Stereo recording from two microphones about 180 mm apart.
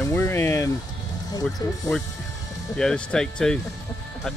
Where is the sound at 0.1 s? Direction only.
15° left (ahead or behind).